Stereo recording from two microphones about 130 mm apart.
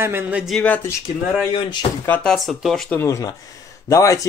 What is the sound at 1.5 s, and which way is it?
Speech, 40° left (ahead or behind).